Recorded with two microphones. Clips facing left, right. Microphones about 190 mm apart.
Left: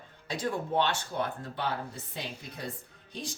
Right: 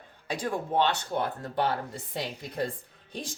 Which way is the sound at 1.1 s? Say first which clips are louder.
Right 3 dB; 65° right (ahead or behind).